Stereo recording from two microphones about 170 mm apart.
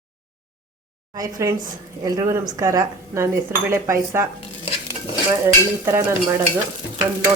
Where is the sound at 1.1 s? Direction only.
20° right (ahead or behind).